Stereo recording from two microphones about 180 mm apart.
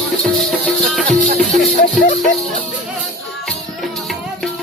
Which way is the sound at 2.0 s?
45° left (ahead or behind).